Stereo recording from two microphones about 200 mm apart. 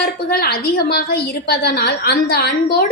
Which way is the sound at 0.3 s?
50° left (ahead or behind).